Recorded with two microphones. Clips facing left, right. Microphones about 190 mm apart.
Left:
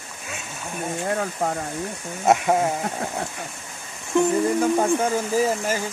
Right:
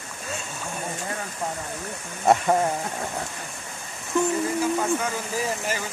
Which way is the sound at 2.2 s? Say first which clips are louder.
Left 1 dB; 5° left (ahead or behind).